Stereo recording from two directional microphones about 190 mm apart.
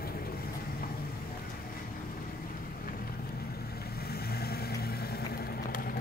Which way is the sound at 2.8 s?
50° left (ahead or behind).